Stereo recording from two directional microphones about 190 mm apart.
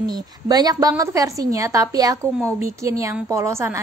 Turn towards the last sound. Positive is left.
turn(degrees=-15)  # may be behind; listen again after turning